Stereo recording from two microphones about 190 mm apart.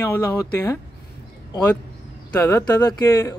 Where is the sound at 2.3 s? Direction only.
15° left (ahead or behind).